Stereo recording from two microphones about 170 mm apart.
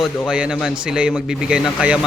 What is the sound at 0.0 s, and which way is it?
A man's voice, 5° right (ahead or behind).